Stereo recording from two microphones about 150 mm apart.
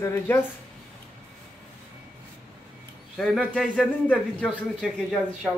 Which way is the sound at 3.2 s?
Centre (ahead or behind).